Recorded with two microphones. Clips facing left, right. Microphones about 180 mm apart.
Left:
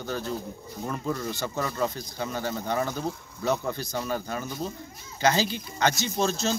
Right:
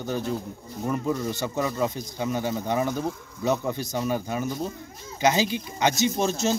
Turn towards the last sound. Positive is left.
turn(degrees=-15)  # may be behind; listen again after turning